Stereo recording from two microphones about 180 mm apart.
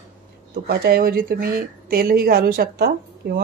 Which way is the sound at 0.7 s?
60° right (ahead or behind).